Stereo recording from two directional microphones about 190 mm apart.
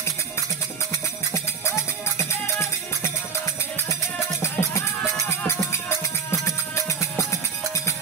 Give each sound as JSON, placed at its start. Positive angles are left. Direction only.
{"t": 2.1, "sound": "music", "side_deg": 15}
{"t": 4.4, "sound": "music", "side_deg": 15}